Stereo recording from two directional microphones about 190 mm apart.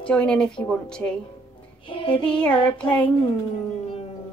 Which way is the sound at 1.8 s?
25° left (ahead or behind).